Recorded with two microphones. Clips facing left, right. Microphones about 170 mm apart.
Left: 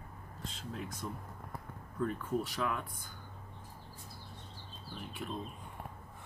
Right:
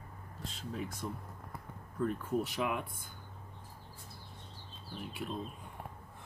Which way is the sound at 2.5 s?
15° right (ahead or behind).